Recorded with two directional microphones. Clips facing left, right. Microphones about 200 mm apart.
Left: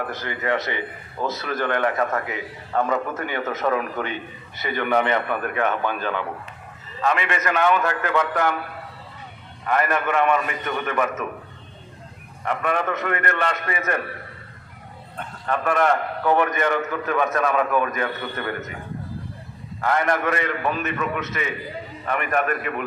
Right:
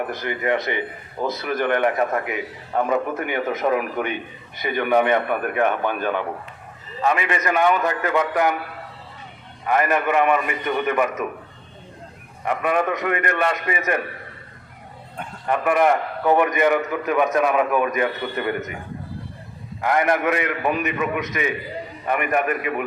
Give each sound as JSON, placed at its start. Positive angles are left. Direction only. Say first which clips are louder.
{"t": 0.0, "sound": "a man's voice", "louder": "right 3 dB", "side_deg": -15}
{"t": 9.6, "sound": "a man's voice", "louder": "right 2 dB", "side_deg": -10}
{"t": 12.5, "sound": "a man's voice", "louder": "right 3 dB", "side_deg": -10}
{"t": 15.1, "sound": "a man's voice", "louder": "right 2 dB", "side_deg": -10}
{"t": 19.8, "sound": "a man's voice", "louder": "right 2 dB", "side_deg": -15}